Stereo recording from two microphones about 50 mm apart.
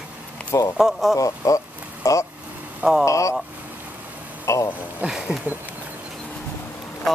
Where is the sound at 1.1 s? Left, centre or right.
Left.